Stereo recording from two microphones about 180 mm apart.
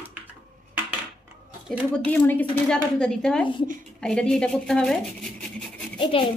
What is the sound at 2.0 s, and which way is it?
A woman's voice, 10° left (ahead or behind).